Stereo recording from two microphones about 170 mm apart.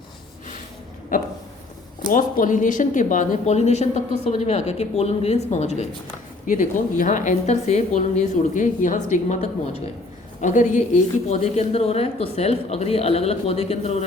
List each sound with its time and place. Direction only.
1.1 s a sound: 50° left (ahead or behind)
2.0 s a woman's voice: 50° left (ahead or behind)
6.4 s a woman's voice: 50° left (ahead or behind)
10.4 s speech: 50° left (ahead or behind)